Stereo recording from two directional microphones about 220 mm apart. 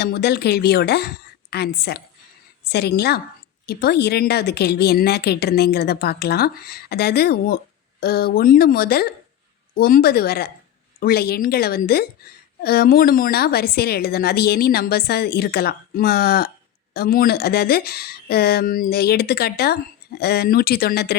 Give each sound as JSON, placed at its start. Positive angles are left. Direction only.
{"t": 0.0, "sound": "speech", "side_deg": 45}